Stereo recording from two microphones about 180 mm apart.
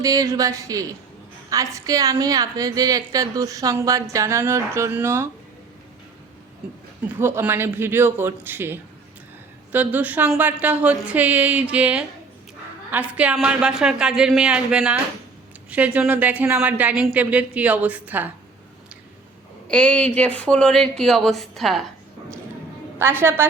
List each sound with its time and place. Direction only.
0.0 s a woman's voice: 20° right (ahead or behind)
7.2 s a woman's voice: 15° right (ahead or behind)
19.6 s a woman's voice: 5° left (ahead or behind)
23.0 s a woman's voice: 15° right (ahead or behind)